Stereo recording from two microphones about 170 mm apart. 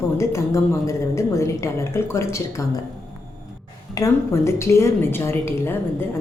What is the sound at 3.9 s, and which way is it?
A woman's voice, 20° left (ahead or behind).